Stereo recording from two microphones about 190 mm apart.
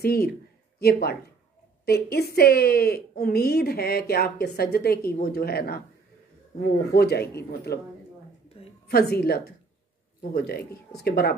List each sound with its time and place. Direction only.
0.0 s a woman's voice: 55° left (ahead or behind)
8.8 s a woman's voice: 55° left (ahead or behind)